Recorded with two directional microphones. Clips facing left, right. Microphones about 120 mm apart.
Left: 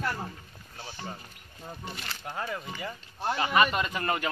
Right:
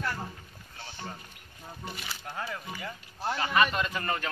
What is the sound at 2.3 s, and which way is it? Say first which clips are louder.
Speech: left 3 dB; 10° left (ahead or behind).